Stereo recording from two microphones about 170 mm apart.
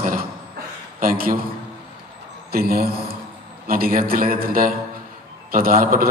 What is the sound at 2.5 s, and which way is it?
A man's voice, 60° right (ahead or behind).